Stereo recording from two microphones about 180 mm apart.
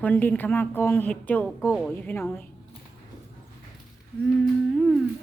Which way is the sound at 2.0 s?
10° left (ahead or behind).